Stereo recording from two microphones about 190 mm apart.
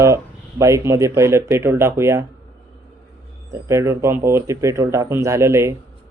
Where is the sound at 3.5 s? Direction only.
15° right (ahead or behind).